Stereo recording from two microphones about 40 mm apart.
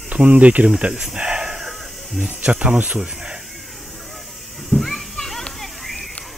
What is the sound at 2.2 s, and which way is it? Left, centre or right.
Speech, right.